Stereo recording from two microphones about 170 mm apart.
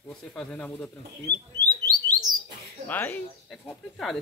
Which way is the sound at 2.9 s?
10° left (ahead or behind).